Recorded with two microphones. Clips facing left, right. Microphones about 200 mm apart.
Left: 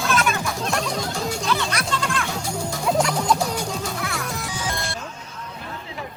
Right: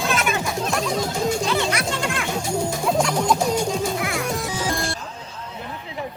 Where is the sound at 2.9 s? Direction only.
5° left (ahead or behind).